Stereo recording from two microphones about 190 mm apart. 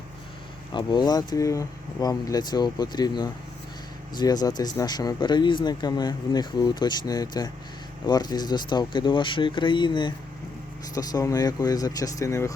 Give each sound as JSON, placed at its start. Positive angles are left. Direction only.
{"t": 0.7, "sound": "speech", "side_deg": 25}